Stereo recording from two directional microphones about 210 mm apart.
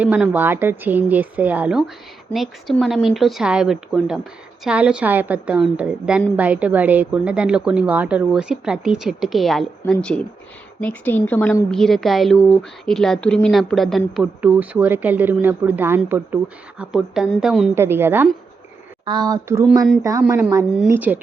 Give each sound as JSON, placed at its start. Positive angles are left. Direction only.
{"t": 0.0, "sound": "speech", "side_deg": -5}